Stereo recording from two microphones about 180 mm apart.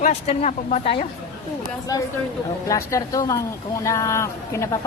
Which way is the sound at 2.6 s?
15° left (ahead or behind).